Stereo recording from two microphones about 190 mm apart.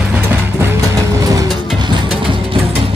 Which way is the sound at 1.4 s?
25° right (ahead or behind).